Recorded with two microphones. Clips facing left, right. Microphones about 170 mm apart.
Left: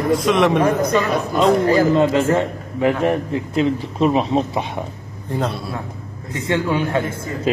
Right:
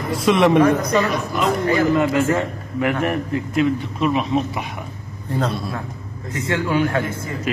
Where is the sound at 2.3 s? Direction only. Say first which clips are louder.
Left 2 dB; 20° left (ahead or behind).